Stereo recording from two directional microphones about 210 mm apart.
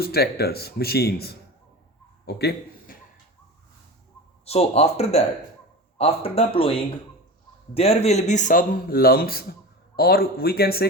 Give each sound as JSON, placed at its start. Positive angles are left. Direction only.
{"t": 0.0, "sound": "speech", "side_deg": 50}
{"t": 2.2, "sound": "a sound", "side_deg": 50}
{"t": 4.4, "sound": "speech", "side_deg": 30}